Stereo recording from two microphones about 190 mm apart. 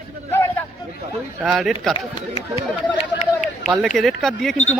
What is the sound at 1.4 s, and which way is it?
Speech, centre (ahead or behind).